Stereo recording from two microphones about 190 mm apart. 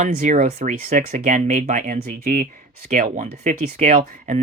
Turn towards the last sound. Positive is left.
turn(degrees=-40)  # may be behind; listen again after turning